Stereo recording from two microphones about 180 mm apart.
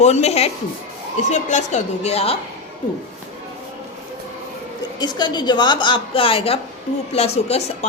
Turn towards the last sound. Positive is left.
turn(degrees=35)  # may be behind; listen again after turning